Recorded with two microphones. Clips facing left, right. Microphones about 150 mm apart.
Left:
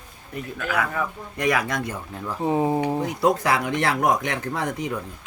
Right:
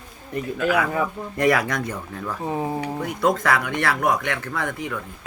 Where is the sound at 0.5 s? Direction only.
15° right (ahead or behind).